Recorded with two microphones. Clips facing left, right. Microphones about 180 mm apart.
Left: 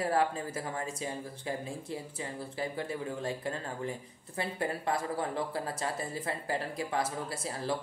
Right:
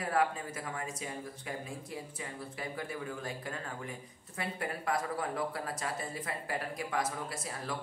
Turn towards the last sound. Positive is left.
turn(degrees=30)  # may be behind; listen again after turning